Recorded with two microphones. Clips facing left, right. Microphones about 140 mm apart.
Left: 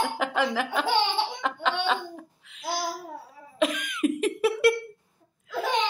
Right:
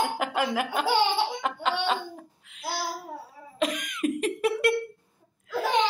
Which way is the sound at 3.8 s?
40° right (ahead or behind).